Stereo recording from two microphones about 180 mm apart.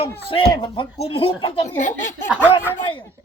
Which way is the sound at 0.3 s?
30° left (ahead or behind).